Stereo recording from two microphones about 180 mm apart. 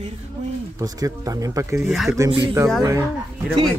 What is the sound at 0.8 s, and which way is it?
Speech, 20° right (ahead or behind).